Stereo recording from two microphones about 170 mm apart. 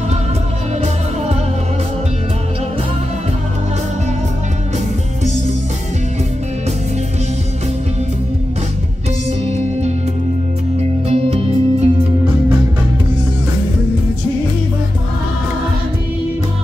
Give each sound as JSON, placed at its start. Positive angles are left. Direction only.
{"t": 9.5, "sound": "music", "side_deg": -40}